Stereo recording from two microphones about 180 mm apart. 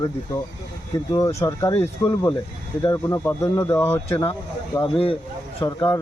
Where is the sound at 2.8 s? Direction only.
15° left (ahead or behind).